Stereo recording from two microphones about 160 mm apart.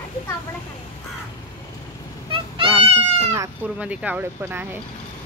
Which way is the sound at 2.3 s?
35° right (ahead or behind).